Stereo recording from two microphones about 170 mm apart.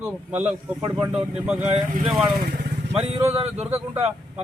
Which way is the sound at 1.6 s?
45° right (ahead or behind).